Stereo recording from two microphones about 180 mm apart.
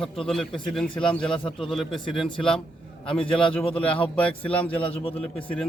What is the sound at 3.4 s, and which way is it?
Speech, 30° left (ahead or behind).